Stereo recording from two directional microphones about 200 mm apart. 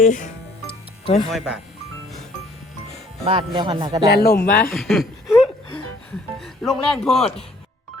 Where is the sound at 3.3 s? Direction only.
25° right (ahead or behind).